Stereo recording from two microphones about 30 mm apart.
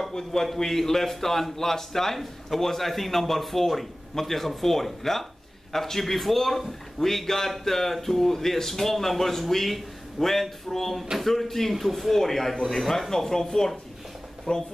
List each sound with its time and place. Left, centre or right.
0.1 s a man's voice: centre
14.5 s speech: left